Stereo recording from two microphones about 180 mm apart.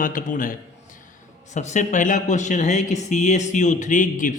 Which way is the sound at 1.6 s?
40° left (ahead or behind).